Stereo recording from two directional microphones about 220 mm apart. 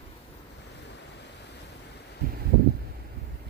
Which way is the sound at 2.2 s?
40° right (ahead or behind).